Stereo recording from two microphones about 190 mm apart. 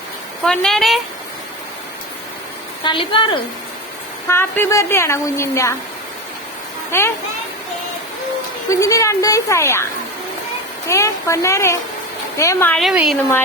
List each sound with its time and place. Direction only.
0.4 s a woman's voice: centre (ahead or behind)
2.8 s a woman's voice: 25° left (ahead or behind)
4.3 s speech: 15° left (ahead or behind)
6.9 s speech: 15° left (ahead or behind)
8.7 s speech: 15° left (ahead or behind)
10.8 s a woman's voice: 15° left (ahead or behind); by 13.1 s 5° right (ahead or behind)